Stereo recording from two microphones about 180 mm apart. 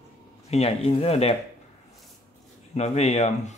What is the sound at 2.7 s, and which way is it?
Speech, 35° left (ahead or behind).